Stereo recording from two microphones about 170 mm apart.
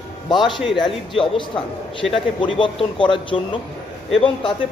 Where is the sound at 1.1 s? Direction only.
30° left (ahead or behind).